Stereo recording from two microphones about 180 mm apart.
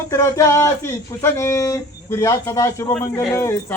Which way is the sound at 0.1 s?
15° left (ahead or behind).